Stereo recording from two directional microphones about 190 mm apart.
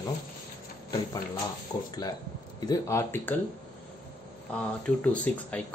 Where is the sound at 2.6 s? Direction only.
15° left (ahead or behind).